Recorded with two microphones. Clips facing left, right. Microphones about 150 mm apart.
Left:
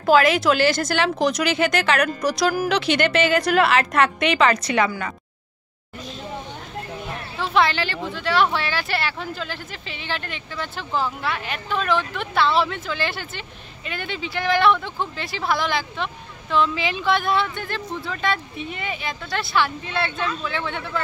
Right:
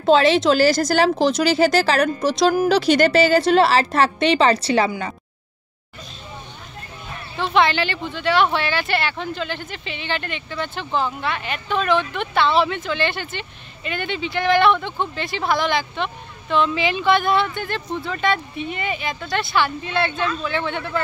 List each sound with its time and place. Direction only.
0.0 s speech: 25° right (ahead or behind)
2.7 s a woman's voice: 40° right (ahead or behind)
7.3 s speech: centre (ahead or behind)